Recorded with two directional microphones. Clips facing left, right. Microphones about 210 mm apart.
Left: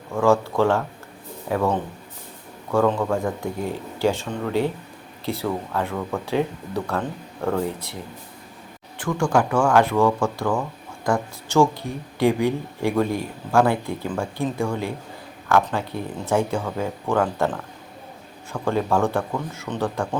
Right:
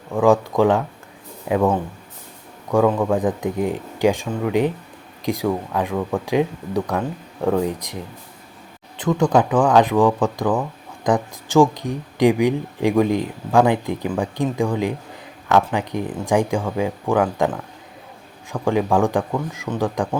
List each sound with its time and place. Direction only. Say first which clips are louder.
0.1 s speech: right 3 dB; 15° right (ahead or behind)